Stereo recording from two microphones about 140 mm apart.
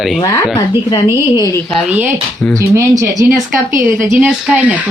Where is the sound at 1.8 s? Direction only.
15° right (ahead or behind).